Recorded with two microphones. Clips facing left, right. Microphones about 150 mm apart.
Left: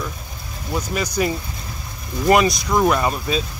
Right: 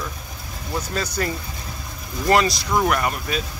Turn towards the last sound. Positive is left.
turn(degrees=25)  # may be behind; listen again after turning